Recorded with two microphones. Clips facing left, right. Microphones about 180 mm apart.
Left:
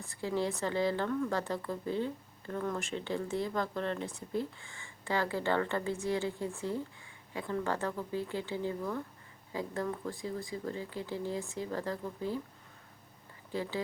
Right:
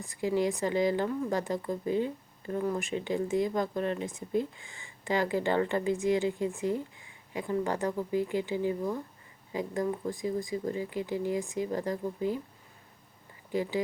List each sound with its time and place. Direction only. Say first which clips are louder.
0.0 s a woman's voice: right 5 dB; 15° right (ahead or behind)
13.5 s a woman's voice: right 5 dB; 15° right (ahead or behind)